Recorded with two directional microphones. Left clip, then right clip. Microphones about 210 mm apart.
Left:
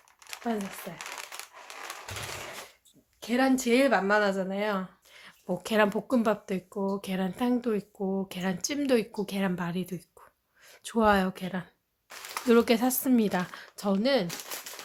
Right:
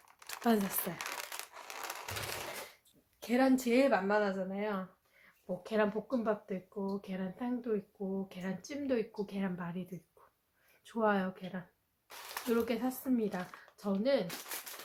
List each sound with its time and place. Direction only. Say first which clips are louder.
0.5 s speech: right 1 dB; 45° right (ahead or behind)
0.9 s crumpling: left 2 dB; 20° right (ahead or behind)
3.2 s speech: left 4 dB; 5° left (ahead or behind); by 14.3 s 55° left (ahead or behind)